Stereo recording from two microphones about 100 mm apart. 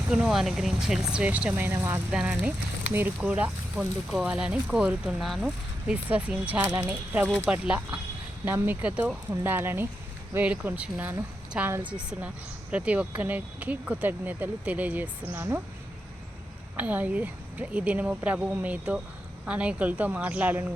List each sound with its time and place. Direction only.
0.1 s speech: 5° right (ahead or behind)
5.9 s speech: 15° right (ahead or behind)
16.7 s speech: 15° right (ahead or behind)